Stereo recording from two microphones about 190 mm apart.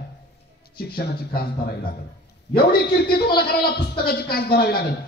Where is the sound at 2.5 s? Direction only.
55° left (ahead or behind).